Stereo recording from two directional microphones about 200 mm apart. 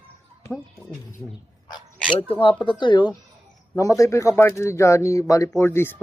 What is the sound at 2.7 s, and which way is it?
Speech, 25° left (ahead or behind).